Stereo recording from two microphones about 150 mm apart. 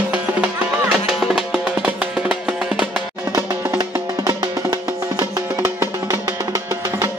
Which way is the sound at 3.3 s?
20° right (ahead or behind).